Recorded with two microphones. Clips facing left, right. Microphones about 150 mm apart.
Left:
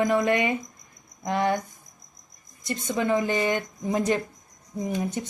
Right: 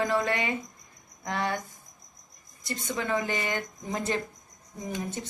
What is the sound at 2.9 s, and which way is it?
A woman's voice, 15° left (ahead or behind).